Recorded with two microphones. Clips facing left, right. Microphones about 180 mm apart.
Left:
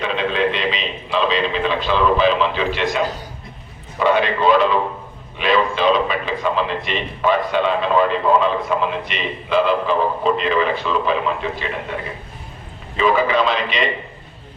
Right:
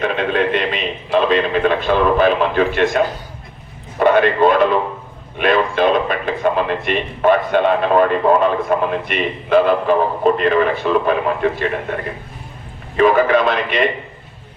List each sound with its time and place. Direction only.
0.0 s a man's voice: 55° right (ahead or behind)